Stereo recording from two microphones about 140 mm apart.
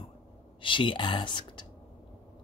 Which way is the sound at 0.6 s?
35° left (ahead or behind).